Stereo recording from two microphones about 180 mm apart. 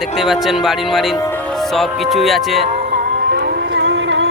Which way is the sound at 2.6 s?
40° right (ahead or behind).